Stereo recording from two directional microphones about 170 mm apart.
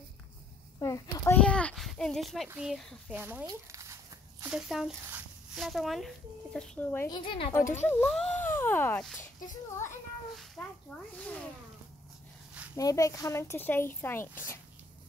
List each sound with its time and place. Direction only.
0.7 s a sound: 20° left (ahead or behind); by 3.2 s centre (ahead or behind)
3.2 s speech: 10° right (ahead or behind); by 7.1 s 10° left (ahead or behind)
7.1 s a woman's voice: 30° left (ahead or behind)
7.8 s speech: 10° left (ahead or behind)
10.3 s a sound: centre (ahead or behind)
12.7 s speech: 20° left (ahead or behind)